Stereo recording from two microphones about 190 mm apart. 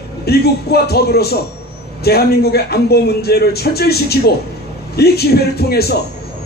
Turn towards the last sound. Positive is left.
turn(degrees=55)  # may be behind; listen again after turning